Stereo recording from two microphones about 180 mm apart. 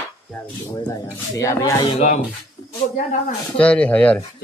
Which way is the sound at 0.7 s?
20° left (ahead or behind).